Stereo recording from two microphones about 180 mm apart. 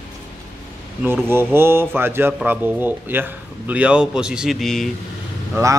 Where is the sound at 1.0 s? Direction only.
10° right (ahead or behind).